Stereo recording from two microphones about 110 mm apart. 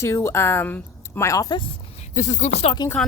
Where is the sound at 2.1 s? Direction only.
90° left.